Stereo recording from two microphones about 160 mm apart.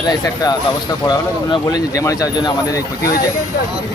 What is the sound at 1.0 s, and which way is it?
Speech, 25° left (ahead or behind).